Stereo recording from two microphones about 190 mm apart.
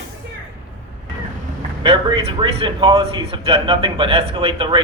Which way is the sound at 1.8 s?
30° right (ahead or behind).